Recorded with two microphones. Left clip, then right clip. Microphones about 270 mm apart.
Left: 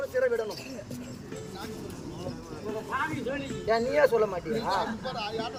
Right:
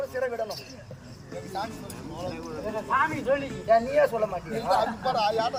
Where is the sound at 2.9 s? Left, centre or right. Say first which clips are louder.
Right 8 dB; centre.